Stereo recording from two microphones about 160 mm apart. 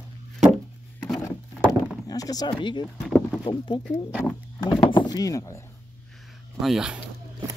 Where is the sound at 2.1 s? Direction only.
25° left (ahead or behind).